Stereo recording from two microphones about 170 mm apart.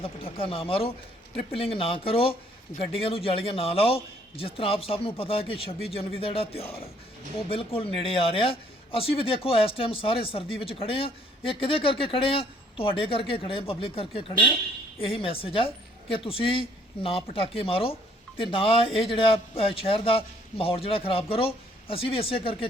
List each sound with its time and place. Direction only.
0.0 s a man's voice: 35° left (ahead or behind)